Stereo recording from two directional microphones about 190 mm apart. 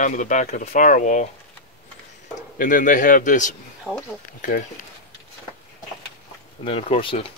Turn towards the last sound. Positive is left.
turn(degrees=30)  # may be behind; listen again after turning